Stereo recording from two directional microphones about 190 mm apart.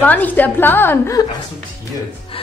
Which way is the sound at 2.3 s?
30° left (ahead or behind).